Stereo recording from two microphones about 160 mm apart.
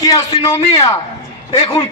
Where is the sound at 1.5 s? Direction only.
35° left (ahead or behind).